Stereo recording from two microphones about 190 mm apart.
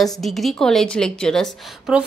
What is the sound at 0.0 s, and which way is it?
A woman's voice, centre (ahead or behind).